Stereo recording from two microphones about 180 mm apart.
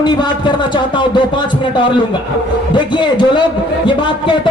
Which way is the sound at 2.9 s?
25° left (ahead or behind).